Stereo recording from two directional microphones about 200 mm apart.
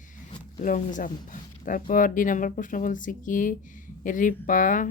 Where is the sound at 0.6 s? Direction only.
40° left (ahead or behind).